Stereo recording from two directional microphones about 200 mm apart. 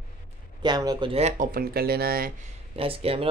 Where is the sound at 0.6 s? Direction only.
20° right (ahead or behind); by 2.3 s 50° right (ahead or behind).